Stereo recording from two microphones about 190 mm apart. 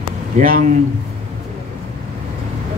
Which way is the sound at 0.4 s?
45° right (ahead or behind).